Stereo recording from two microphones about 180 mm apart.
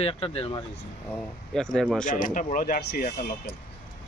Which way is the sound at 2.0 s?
45° left (ahead or behind).